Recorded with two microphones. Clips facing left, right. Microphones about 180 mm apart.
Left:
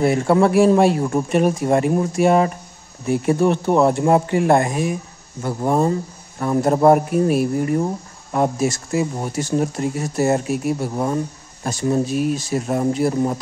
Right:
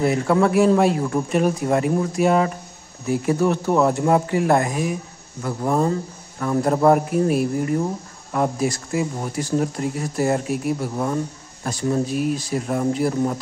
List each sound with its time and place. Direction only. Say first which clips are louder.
0.0 s speech: left 2 dB; 30° left (ahead or behind)
8.3 s speech: left 2 dB; 25° left (ahead or behind)